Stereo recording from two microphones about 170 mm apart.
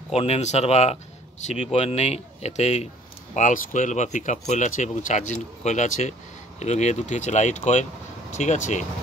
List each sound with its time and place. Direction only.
0.1 s speech: 40° left (ahead or behind)